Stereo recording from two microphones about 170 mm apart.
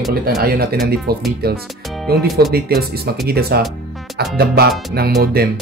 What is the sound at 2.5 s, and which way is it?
Speech, 65° right (ahead or behind).